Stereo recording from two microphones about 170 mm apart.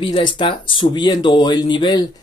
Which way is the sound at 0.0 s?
30° left (ahead or behind).